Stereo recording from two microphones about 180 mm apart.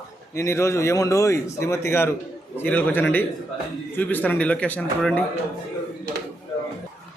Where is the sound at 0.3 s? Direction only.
15° left (ahead or behind).